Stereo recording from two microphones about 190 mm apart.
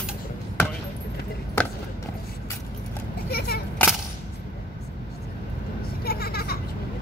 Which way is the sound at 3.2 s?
55° left (ahead or behind).